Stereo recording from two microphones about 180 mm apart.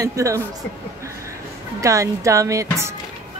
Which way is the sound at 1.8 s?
15° right (ahead or behind).